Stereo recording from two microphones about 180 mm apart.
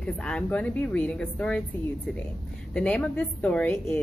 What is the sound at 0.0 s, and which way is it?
A woman's voice, 5° left (ahead or behind).